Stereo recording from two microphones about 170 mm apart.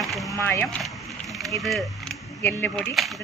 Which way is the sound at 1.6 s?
Centre (ahead or behind).